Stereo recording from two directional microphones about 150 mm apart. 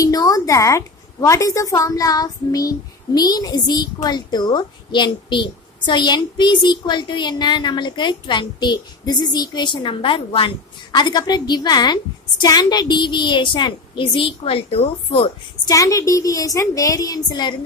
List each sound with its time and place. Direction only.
0.0 s a woman's voice: 20° left (ahead or behind)
15.7 s a woman's voice: 20° left (ahead or behind)